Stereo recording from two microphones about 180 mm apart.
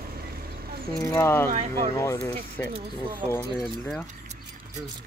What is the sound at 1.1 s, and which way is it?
Speech, 15° left (ahead or behind).